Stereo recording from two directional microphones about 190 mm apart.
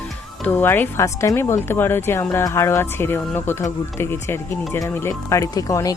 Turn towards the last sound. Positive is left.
turn(degrees=20)  # may be behind; listen again after turning